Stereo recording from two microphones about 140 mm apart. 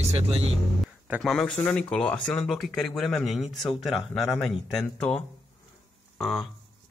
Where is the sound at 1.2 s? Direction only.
Centre (ahead or behind).